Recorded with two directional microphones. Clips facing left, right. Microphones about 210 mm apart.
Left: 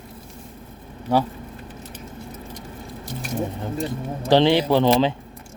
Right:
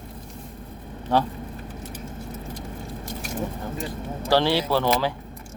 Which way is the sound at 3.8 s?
20° left (ahead or behind).